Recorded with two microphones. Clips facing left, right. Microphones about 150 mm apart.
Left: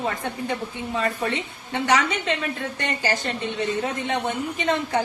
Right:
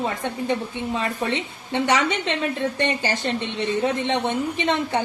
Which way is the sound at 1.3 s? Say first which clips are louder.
Right 3 dB; 20° right (ahead or behind).